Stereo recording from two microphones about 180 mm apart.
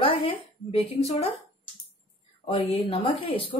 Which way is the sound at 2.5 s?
30° left (ahead or behind).